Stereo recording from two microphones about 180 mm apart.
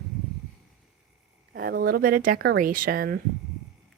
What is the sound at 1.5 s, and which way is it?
Speech, 55° right (ahead or behind).